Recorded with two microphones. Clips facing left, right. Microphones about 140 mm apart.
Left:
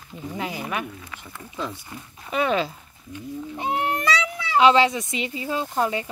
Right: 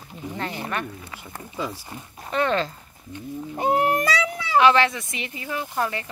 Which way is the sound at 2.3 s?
10° left (ahead or behind).